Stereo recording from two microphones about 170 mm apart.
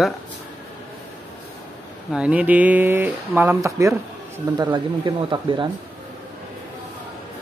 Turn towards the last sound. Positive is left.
turn(degrees=-25)  # may be behind; listen again after turning